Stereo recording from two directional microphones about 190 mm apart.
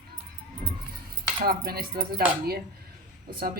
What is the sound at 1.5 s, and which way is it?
Speech, 55° right (ahead or behind).